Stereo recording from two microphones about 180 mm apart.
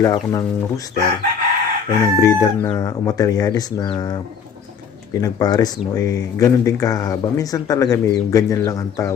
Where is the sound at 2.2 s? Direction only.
20° left (ahead or behind).